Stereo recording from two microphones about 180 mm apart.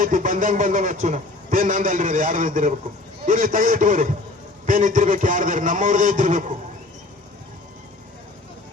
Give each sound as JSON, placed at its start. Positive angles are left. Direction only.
{"t": 0.0, "sound": "a man's voice", "side_deg": -45}